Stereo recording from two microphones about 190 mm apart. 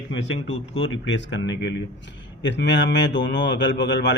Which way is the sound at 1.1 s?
70° left (ahead or behind).